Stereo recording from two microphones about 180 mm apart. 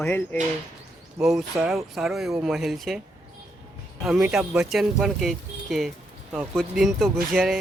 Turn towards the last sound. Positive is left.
turn(degrees=0)  # may be behind; listen again after turning